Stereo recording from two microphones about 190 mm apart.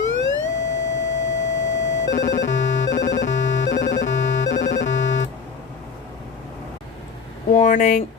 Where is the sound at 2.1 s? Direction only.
75° left (ahead or behind).